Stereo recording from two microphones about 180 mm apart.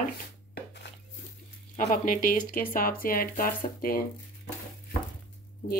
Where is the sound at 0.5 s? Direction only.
70° left (ahead or behind).